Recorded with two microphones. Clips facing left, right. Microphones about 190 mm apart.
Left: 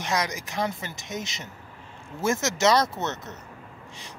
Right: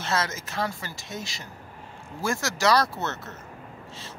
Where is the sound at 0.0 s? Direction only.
15° left (ahead or behind).